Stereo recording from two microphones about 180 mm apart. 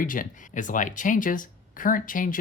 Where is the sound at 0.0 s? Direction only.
50° left (ahead or behind).